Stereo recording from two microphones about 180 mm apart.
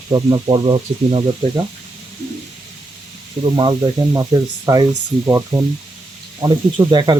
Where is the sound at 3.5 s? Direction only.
25° right (ahead or behind).